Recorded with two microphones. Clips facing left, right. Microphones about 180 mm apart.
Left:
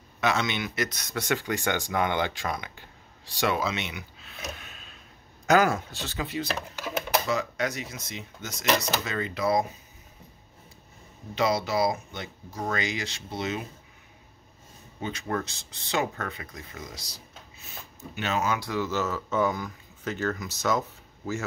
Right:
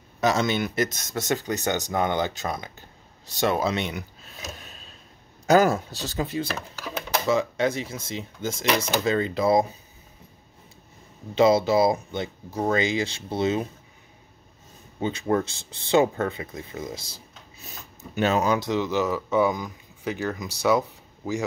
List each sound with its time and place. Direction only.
0.2 s speech: 40° right (ahead or behind)
3.9 s a sound: 40° right (ahead or behind)
5.5 s speech: 40° right (ahead or behind)
7.2 s speech: 25° right (ahead or behind)
11.3 s speech: 25° right (ahead or behind)
15.0 s speech: 25° right (ahead or behind)
18.6 s speech: 20° right (ahead or behind)